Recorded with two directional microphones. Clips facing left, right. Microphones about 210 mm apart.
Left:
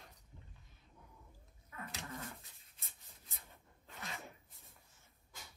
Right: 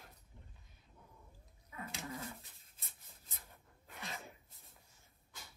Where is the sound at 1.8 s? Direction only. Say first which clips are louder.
Right 2 dB; centre (ahead or behind).